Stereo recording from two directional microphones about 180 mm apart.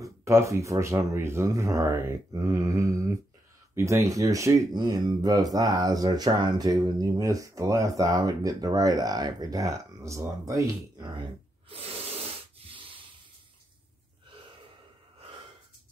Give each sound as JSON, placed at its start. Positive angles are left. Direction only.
{"t": 0.0, "sound": "speech", "side_deg": -15}
{"t": 11.7, "sound": "rub", "side_deg": -35}